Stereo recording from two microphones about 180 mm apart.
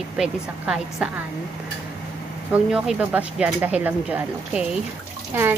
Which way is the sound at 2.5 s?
5° right (ahead or behind).